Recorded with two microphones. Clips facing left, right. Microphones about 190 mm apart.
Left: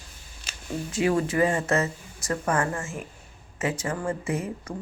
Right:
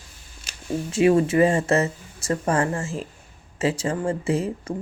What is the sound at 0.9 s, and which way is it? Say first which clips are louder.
Speech: right 6 dB; 25° right (ahead or behind).